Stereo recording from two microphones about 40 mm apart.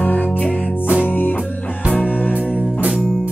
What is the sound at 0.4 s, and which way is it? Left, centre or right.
Music, left.